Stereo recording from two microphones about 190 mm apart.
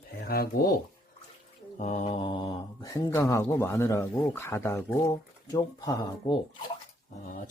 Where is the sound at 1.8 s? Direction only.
40° left (ahead or behind); by 6.3 s 20° left (ahead or behind).